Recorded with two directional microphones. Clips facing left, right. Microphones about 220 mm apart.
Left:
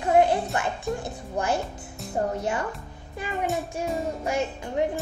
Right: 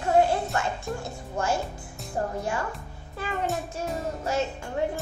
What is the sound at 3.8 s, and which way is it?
Music, centre (ahead or behind).